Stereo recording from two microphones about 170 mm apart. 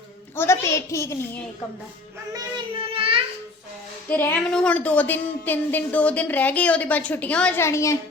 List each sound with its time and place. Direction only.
0.3 s a woman's voice: 15° left (ahead or behind)
2.9 s a sound: 30° right (ahead or behind)
4.1 s a woman's voice: 10° left (ahead or behind)